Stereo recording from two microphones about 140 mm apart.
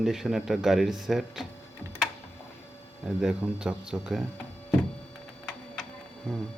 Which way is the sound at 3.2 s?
5° right (ahead or behind).